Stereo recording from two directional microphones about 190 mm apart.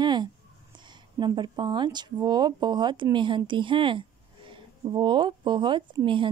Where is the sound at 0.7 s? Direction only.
25° right (ahead or behind).